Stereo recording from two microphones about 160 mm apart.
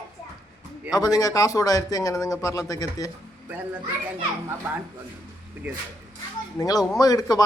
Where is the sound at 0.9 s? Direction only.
25° left (ahead or behind).